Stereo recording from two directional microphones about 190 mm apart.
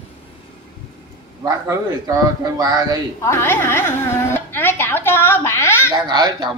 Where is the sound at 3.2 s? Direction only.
15° left (ahead or behind).